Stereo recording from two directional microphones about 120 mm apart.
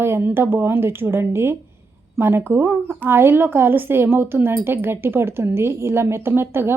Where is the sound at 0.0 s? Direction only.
20° right (ahead or behind).